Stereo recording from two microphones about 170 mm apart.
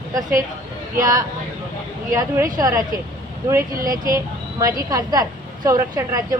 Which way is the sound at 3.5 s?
55° right (ahead or behind).